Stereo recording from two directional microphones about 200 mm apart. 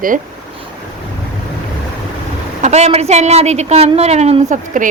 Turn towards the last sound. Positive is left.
turn(degrees=-40)  # may be behind; listen again after turning